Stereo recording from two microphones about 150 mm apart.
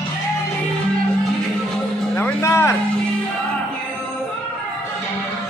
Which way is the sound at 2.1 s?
15° left (ahead or behind).